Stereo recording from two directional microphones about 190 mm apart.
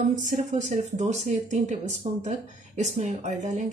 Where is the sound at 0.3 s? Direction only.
40° right (ahead or behind).